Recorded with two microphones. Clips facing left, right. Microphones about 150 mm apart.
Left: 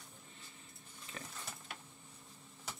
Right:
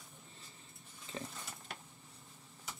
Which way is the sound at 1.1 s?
25° right (ahead or behind).